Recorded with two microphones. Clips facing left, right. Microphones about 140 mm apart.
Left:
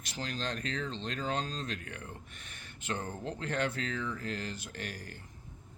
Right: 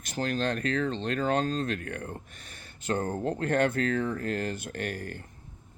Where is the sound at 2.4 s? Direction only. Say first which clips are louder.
Right 2 dB; 35° right (ahead or behind).